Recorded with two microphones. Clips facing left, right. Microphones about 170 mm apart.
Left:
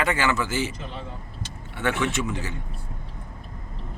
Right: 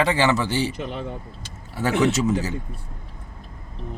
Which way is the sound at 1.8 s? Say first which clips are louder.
Right 5 dB; 40° right (ahead or behind).